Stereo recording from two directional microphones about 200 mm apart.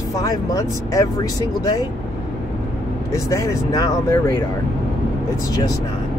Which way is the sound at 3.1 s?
15° left (ahead or behind).